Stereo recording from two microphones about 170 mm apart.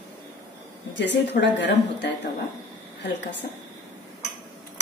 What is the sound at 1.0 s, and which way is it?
A woman's voice, 90° left.